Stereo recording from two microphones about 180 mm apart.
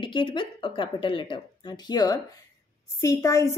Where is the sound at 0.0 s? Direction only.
25° left (ahead or behind).